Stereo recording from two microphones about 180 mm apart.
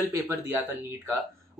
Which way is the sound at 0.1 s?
15° right (ahead or behind).